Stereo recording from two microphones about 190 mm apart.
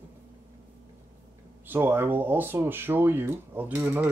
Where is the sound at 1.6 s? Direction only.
10° right (ahead or behind).